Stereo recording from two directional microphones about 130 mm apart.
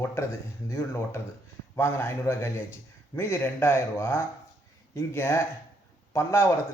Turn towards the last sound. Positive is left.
turn(degrees=20)  # may be behind; listen again after turning